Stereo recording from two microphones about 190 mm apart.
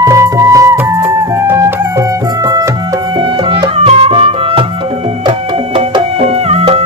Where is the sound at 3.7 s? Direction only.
30° right (ahead or behind).